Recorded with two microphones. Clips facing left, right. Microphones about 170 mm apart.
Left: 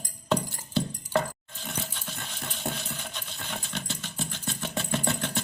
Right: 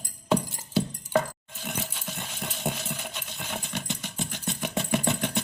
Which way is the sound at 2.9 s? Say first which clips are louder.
Right 2 dB; 10° right (ahead or behind).